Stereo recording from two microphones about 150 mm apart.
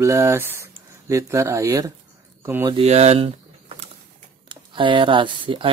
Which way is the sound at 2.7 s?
45° right (ahead or behind).